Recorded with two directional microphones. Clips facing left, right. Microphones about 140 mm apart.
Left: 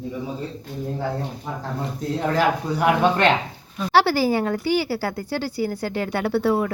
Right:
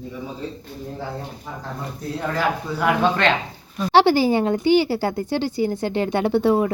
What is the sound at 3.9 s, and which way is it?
Speech, 20° right (ahead or behind).